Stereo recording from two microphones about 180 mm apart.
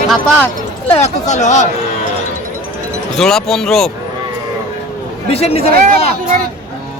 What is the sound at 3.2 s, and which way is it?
Speech, centre (ahead or behind).